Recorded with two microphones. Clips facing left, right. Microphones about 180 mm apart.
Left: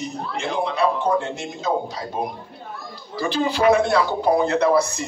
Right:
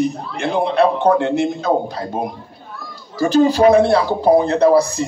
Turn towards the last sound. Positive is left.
turn(degrees=-35)  # may be behind; listen again after turning